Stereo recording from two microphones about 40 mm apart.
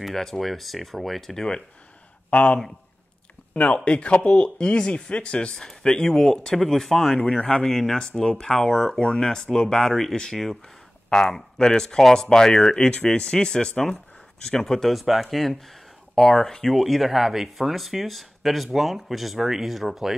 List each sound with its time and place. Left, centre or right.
0.0 s speech: centre
1.3 s speech: centre
2.3 s speech: left; by 10.6 s centre
11.1 s speech: centre
14.6 s speech: centre
16.2 s speech: centre
16.7 s speech: centre